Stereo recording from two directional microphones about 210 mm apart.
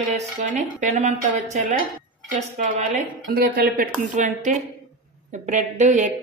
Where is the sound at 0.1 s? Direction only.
35° right (ahead or behind).